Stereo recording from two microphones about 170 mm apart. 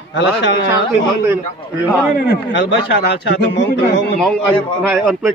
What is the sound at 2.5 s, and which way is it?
A man's voice, 90° left.